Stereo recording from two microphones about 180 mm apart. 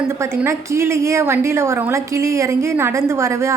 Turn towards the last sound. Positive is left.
turn(degrees=-15)  # may be behind; listen again after turning